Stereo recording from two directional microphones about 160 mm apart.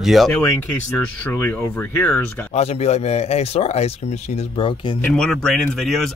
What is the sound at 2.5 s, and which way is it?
Speech, 40° left (ahead or behind).